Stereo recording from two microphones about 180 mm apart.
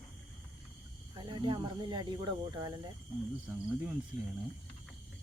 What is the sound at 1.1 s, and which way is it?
Speech, 25° right (ahead or behind).